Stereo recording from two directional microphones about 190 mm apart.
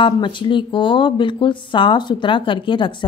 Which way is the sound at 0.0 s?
25° left (ahead or behind).